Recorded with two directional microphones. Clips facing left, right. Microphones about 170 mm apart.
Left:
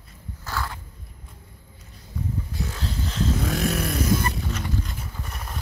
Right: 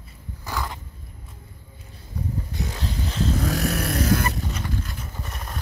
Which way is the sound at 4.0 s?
70° right (ahead or behind).